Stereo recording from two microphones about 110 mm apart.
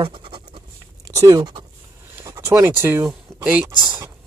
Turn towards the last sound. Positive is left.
turn(degrees=-15)  # may be behind; listen again after turning